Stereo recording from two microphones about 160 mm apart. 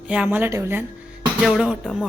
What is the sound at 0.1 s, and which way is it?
Speech, 10° right (ahead or behind).